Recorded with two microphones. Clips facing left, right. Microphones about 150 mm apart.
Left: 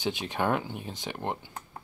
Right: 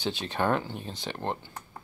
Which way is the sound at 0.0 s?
15° left (ahead or behind).